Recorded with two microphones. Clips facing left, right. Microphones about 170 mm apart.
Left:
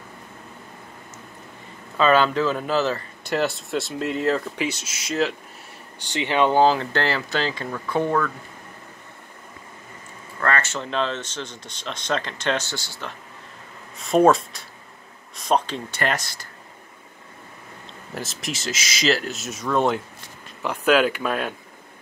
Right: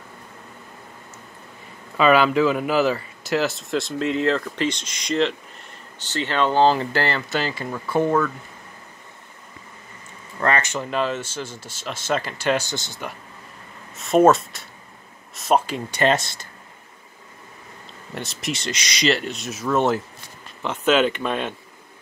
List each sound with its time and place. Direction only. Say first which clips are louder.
2.0 s speech: right 2 dB; 10° right (ahead or behind); by 6.7 s 15° left (ahead or behind)
6.8 s speech: right 1 dB; 5° right (ahead or behind)
10.4 s speech: right 2 dB; 15° right (ahead or behind)
13.9 s speech: right 1 dB; centre (ahead or behind)
16.0 s speech: right 6 dB; 25° right (ahead or behind)
18.1 s speech: right 2 dB; centre (ahead or behind)
20.6 s speech: even; 10° left (ahead or behind)